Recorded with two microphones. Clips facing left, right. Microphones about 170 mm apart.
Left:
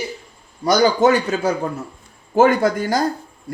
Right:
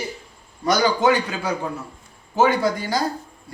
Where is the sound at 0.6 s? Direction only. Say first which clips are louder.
Left 4 dB; 45° left (ahead or behind).